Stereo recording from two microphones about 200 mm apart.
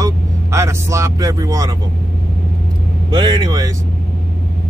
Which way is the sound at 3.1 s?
20° right (ahead or behind).